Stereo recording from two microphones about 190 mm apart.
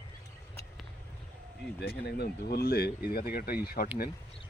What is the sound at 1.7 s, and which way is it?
Speech, 60° left (ahead or behind).